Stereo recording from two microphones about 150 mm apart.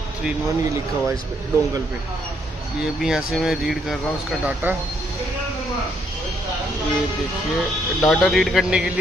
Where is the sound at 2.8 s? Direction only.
5° right (ahead or behind).